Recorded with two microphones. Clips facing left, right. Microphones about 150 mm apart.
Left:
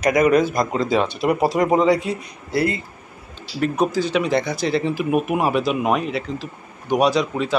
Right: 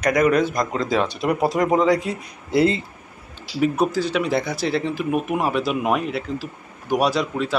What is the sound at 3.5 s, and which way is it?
Speech, 5° right (ahead or behind).